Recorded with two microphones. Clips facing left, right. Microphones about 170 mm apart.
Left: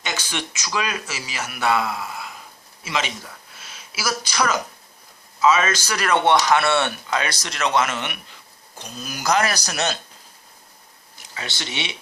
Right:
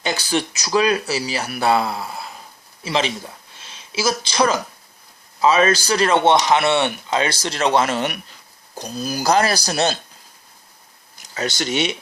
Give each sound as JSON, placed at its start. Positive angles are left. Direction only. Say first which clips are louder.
{"t": 0.0, "sound": "speech", "louder": "right 7 dB", "side_deg": -35}
{"t": 11.3, "sound": "speech", "louder": "right 9 dB", "side_deg": -45}